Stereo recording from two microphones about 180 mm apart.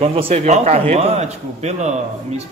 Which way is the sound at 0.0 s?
35° right (ahead or behind).